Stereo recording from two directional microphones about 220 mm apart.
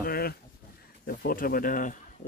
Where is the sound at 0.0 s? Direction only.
45° left (ahead or behind).